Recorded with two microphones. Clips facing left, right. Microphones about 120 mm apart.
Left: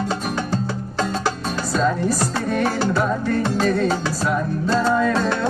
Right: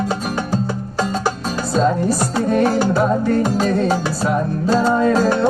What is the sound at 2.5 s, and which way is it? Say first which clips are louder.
Music: right 5 dB; 45° right (ahead or behind).